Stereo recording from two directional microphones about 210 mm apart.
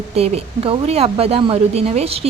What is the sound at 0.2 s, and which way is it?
Speech, 30° right (ahead or behind).